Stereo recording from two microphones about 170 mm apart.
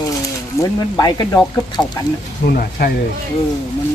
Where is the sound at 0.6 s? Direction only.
25° left (ahead or behind).